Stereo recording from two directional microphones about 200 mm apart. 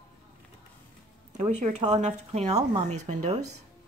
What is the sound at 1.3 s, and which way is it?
Speech, 35° right (ahead or behind).